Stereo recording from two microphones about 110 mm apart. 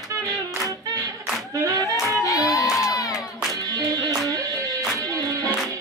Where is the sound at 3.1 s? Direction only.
5° right (ahead or behind).